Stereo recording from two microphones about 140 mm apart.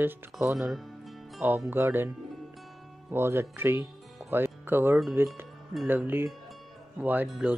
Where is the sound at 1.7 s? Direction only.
15° right (ahead or behind).